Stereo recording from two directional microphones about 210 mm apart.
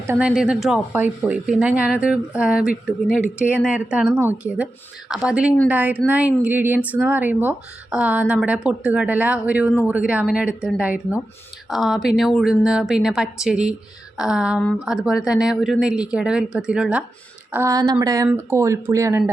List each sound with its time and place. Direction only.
0.1 s speech: 5° right (ahead or behind)